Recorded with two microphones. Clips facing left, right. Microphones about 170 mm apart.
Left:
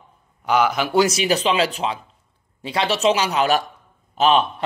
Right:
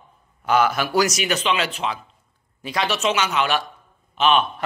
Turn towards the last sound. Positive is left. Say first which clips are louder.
# left 2 dB
turn(degrees=35)  # may be behind; listen again after turning